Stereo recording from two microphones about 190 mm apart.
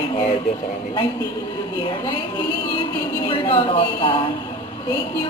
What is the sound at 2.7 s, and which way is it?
A man's voice, 25° left (ahead or behind).